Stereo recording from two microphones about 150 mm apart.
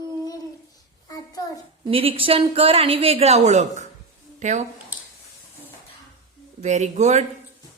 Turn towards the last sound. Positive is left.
turn(degrees=-50)  # may be behind; listen again after turning